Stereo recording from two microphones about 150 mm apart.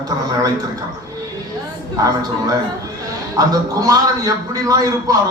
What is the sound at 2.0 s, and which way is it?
A man's voice, 25° right (ahead or behind).